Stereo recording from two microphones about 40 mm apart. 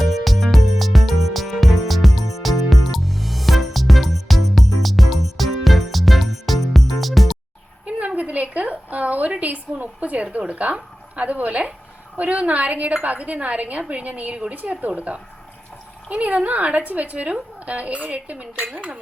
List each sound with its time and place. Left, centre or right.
0.0 s music: centre
7.9 s a sound: right
10.5 s a woman's voice: right
14.5 s a woman's voice: right